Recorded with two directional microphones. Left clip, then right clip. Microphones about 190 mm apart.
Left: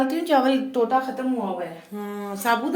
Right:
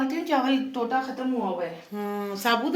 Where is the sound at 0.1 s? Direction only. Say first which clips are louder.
Left 5 dB; 60° left (ahead or behind).